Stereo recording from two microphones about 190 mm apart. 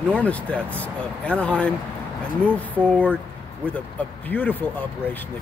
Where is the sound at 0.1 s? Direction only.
5° left (ahead or behind).